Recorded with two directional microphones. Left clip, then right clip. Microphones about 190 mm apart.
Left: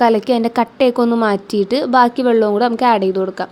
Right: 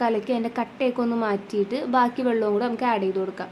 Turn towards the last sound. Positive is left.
turn(degrees=35)  # may be behind; listen again after turning